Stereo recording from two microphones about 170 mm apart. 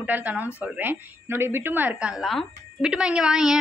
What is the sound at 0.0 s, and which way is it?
A woman's voice, 10° right (ahead or behind).